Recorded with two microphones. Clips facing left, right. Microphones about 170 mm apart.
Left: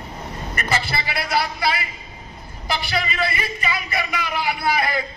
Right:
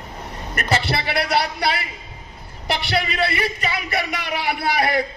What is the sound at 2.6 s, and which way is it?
Speech, 65° right (ahead or behind).